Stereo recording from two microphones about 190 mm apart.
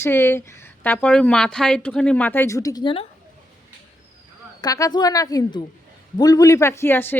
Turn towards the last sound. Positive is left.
turn(degrees=10)  # may be behind; listen again after turning